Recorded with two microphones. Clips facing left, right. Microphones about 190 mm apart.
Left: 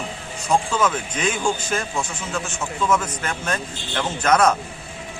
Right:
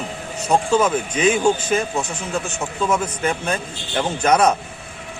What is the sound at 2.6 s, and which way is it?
Speech, 30° right (ahead or behind).